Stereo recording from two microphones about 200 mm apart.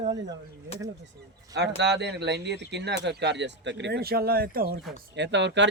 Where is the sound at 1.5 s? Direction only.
60° right (ahead or behind).